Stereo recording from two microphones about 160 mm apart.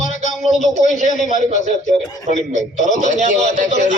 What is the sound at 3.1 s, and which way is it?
Speech, 45° right (ahead or behind).